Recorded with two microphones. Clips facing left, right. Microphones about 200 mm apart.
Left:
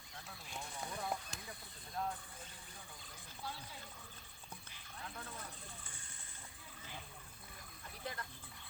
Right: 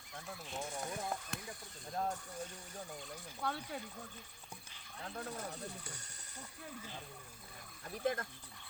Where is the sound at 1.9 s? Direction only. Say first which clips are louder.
Right 4 dB; 45° right (ahead or behind).